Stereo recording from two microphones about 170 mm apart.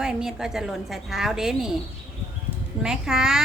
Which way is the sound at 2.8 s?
5° right (ahead or behind).